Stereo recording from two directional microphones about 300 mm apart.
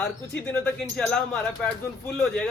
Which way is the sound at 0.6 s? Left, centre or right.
Centre.